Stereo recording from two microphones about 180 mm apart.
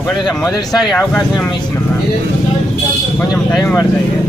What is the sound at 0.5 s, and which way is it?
Speech, centre (ahead or behind).